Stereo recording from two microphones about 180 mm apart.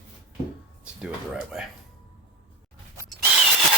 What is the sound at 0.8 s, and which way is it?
Speech, 5° right (ahead or behind).